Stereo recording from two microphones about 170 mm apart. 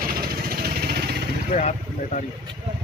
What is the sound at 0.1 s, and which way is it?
Vehicle, 60° right (ahead or behind).